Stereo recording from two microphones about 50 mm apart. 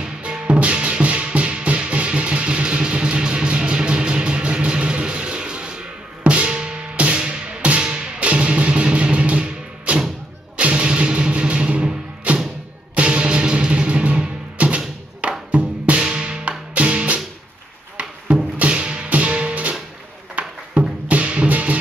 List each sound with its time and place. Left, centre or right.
0.2 s music: right
18.6 s music: right
20.4 s a sound: right
21.1 s music: right